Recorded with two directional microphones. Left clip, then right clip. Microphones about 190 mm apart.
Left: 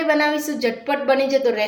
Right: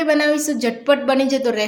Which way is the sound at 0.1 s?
60° right (ahead or behind).